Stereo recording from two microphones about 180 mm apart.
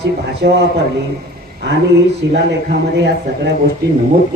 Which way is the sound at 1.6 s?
70° right (ahead or behind).